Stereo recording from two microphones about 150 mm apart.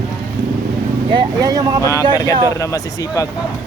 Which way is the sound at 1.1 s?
25° right (ahead or behind).